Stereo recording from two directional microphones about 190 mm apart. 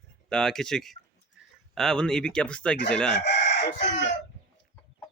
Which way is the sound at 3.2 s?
65° left (ahead or behind).